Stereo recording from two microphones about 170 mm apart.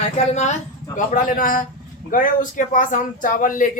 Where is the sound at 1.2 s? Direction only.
55° left (ahead or behind).